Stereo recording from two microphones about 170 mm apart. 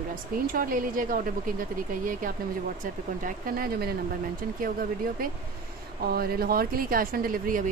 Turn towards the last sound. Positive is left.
turn(degrees=-55)  # may be behind; listen again after turning